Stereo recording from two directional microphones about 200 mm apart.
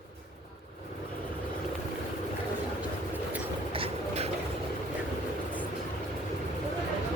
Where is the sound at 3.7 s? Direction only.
30° right (ahead or behind).